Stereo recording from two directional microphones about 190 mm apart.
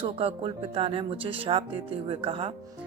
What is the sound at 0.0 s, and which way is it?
Speech, 30° right (ahead or behind).